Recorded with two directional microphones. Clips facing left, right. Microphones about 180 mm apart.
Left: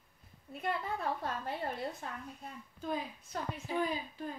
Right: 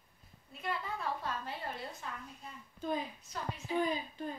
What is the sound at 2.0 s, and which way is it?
Speech, 50° left (ahead or behind).